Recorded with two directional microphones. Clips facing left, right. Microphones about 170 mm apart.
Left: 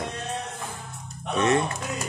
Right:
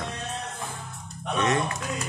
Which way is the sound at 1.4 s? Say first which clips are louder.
Left 3 dB; 30° left (ahead or behind).